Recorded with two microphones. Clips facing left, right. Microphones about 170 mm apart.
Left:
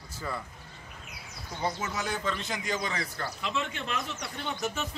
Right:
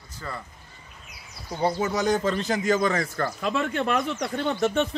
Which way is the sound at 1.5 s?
35° right (ahead or behind).